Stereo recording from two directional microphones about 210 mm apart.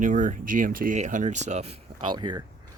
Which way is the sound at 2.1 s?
20° right (ahead or behind).